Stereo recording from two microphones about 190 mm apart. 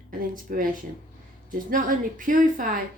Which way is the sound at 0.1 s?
45° right (ahead or behind).